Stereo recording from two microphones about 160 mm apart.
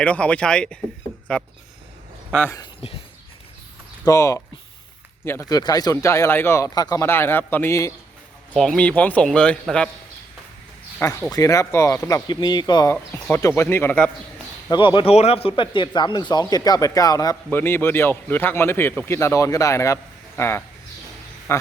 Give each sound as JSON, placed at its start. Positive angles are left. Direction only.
{"t": 0.0, "sound": "speech", "side_deg": 5}
{"t": 2.8, "sound": "a sound", "side_deg": 35}
{"t": 4.0, "sound": "speech", "side_deg": 20}
{"t": 8.5, "sound": "speech", "side_deg": 5}
{"t": 11.3, "sound": "speech", "side_deg": 20}
{"t": 12.9, "sound": "speech", "side_deg": 15}
{"t": 14.7, "sound": "speech", "side_deg": 30}